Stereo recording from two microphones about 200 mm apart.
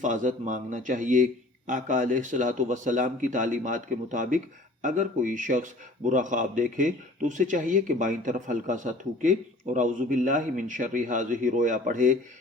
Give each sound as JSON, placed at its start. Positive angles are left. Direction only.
{"t": 0.0, "sound": "a man's voice", "side_deg": -40}